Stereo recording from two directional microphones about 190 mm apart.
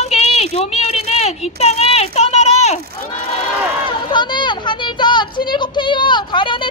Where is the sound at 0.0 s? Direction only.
35° left (ahead or behind).